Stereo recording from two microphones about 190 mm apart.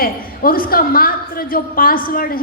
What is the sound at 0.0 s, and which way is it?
A woman's voice, 50° left (ahead or behind).